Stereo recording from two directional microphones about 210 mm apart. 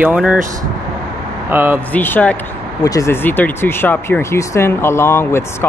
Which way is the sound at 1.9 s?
10° left (ahead or behind).